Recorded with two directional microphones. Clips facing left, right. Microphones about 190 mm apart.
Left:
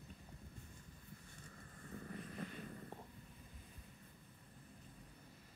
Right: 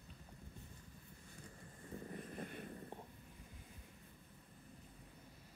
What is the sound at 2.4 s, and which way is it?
Vehicle, 55° right (ahead or behind).